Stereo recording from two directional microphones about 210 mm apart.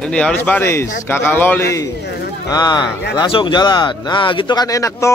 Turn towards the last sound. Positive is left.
turn(degrees=15)  # may be behind; listen again after turning